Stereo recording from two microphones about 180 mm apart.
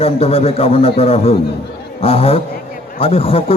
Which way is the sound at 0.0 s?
35° left (ahead or behind).